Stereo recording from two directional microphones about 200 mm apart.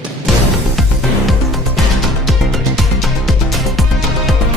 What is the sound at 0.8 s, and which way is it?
Music, centre (ahead or behind).